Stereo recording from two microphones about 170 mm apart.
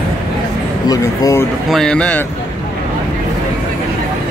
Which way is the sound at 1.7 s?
5° left (ahead or behind).